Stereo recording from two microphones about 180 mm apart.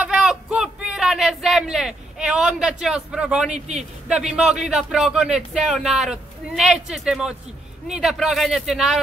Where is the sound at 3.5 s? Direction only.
40° right (ahead or behind).